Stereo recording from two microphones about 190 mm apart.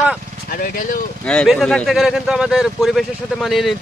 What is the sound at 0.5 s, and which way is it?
Speech, 45° left (ahead or behind).